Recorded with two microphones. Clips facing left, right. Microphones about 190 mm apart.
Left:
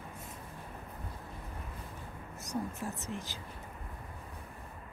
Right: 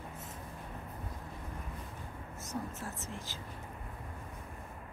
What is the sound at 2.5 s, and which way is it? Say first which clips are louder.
Speech: left 4 dB; 15° left (ahead or behind).